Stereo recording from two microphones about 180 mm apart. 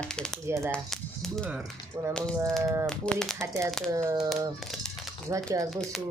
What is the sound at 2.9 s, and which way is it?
Speech, 5° left (ahead or behind).